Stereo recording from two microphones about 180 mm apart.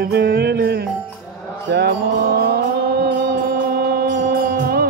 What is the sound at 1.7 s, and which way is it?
Music, 65° right (ahead or behind).